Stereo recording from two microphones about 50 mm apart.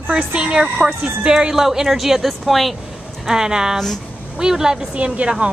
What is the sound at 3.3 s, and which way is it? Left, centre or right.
Speech, centre.